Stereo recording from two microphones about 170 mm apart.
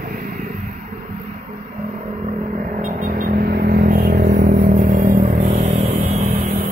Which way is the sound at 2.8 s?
55° right (ahead or behind).